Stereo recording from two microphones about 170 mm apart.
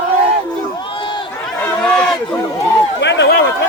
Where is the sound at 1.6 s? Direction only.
5° left (ahead or behind).